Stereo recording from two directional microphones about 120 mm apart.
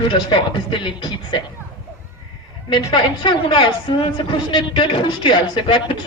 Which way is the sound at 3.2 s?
40° left (ahead or behind).